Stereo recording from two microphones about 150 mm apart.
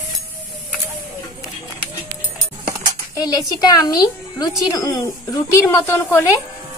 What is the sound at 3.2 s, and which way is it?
A child's voice, 25° left (ahead or behind).